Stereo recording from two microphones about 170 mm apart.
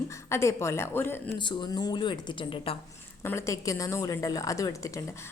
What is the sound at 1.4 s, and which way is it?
A woman's voice, 25° left (ahead or behind).